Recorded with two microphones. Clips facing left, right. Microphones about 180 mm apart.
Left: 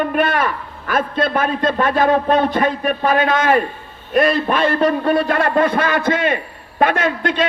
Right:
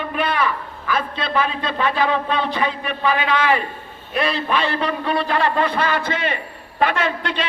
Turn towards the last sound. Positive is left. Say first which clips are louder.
# left 5 dB
turn(degrees=45)  # may be behind; listen again after turning